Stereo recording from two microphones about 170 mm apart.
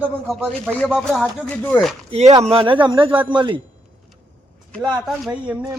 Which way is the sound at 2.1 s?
40° right (ahead or behind).